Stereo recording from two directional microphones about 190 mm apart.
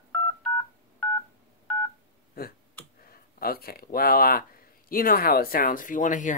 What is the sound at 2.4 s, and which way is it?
Finger snapping, 55° left (ahead or behind).